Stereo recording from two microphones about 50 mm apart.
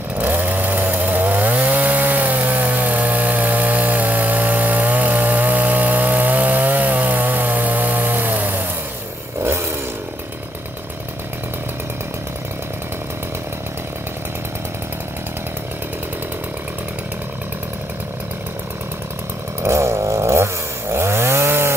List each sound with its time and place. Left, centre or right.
0.2 s chainsaw: right
9.4 s chainsaw: right
19.6 s chainsaw: right
20.9 s chainsaw: right